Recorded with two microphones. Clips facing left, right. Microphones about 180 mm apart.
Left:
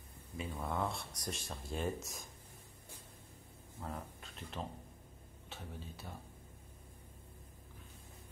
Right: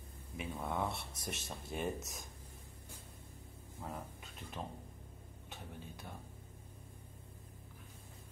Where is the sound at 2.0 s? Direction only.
20° right (ahead or behind).